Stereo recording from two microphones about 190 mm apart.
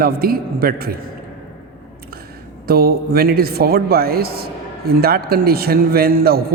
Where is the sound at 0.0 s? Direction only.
50° right (ahead or behind).